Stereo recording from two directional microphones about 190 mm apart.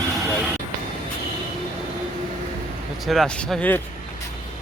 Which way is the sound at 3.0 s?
Centre (ahead or behind).